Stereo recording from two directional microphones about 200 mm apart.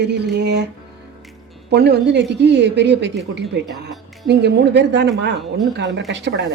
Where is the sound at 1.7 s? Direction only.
55° right (ahead or behind).